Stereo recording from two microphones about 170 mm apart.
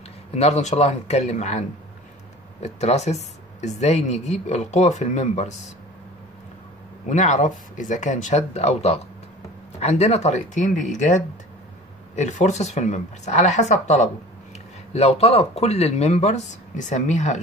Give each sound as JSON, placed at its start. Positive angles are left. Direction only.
{"t": 0.3, "sound": "speech", "side_deg": 40}
{"t": 2.6, "sound": "speech", "side_deg": 40}
{"t": 7.1, "sound": "speech", "side_deg": 45}